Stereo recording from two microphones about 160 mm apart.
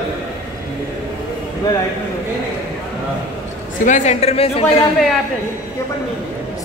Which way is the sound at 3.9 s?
45° left (ahead or behind).